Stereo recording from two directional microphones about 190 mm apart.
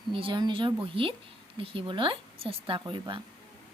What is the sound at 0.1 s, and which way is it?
Speech, 25° right (ahead or behind).